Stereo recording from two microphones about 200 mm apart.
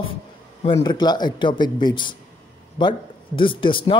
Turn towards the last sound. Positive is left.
turn(degrees=25)  # may be behind; listen again after turning